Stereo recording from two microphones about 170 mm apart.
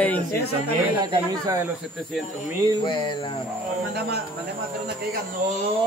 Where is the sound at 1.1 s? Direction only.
20° right (ahead or behind).